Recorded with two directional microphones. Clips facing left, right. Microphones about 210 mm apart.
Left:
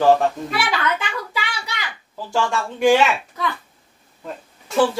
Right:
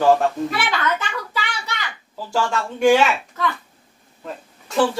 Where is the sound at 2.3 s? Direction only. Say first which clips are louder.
Even; centre (ahead or behind).